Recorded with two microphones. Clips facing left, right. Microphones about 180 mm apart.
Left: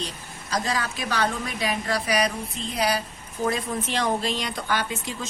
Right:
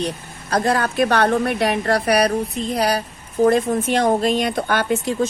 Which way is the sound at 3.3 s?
55° right (ahead or behind).